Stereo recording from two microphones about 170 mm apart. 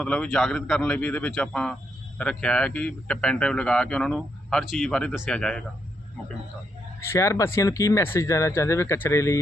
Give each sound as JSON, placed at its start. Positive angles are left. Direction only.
{"t": 0.0, "sound": "a man's voice", "side_deg": 5}
{"t": 7.0, "sound": "speech", "side_deg": 15}